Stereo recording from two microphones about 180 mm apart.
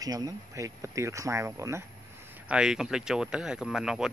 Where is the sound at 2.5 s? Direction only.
5° right (ahead or behind).